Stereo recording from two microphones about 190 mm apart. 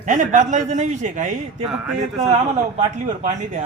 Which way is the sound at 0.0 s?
40° right (ahead or behind).